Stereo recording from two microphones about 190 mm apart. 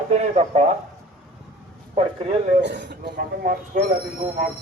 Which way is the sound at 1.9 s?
30° right (ahead or behind).